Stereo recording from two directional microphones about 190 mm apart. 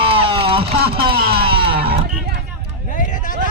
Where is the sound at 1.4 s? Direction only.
30° right (ahead or behind).